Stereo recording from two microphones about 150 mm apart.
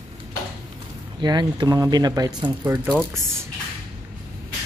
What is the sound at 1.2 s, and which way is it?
Speech, 30° right (ahead or behind).